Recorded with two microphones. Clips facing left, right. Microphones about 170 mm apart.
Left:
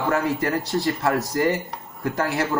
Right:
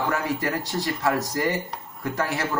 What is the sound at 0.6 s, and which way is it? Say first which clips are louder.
Speech: left 4 dB; 20° right (ahead or behind).